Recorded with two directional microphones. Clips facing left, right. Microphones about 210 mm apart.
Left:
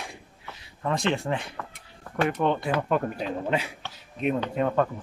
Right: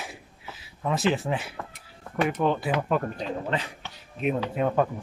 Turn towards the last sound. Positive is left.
turn(degrees=-5)  # may be behind; listen again after turning